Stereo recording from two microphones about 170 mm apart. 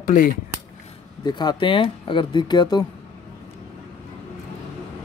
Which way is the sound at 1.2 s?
25° left (ahead or behind).